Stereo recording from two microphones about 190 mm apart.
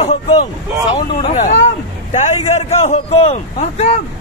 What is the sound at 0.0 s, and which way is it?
A man's voice, 30° left (ahead or behind).